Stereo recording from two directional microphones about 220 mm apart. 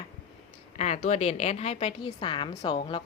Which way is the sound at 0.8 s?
30° left (ahead or behind).